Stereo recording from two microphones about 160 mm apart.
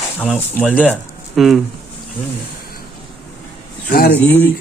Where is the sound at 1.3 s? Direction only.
Centre (ahead or behind).